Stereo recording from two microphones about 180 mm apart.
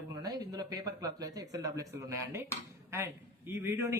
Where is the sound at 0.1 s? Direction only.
20° right (ahead or behind).